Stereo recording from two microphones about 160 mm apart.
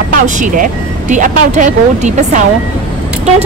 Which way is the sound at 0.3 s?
50° right (ahead or behind).